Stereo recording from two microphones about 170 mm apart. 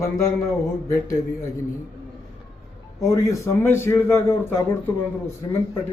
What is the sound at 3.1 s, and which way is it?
A man's voice, 20° left (ahead or behind).